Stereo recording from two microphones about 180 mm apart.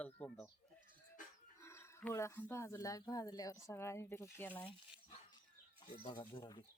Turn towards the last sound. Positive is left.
turn(degrees=25)  # may be behind; listen again after turning